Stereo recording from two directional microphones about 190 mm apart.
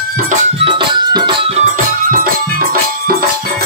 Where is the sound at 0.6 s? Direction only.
25° right (ahead or behind); by 3.1 s 50° right (ahead or behind).